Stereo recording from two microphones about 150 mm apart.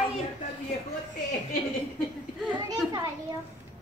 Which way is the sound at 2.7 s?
25° right (ahead or behind).